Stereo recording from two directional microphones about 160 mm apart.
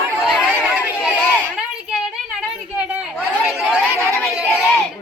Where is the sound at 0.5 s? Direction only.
10° right (ahead or behind).